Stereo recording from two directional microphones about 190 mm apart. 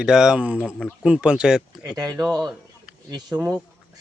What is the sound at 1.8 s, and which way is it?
Speech, 20° right (ahead or behind).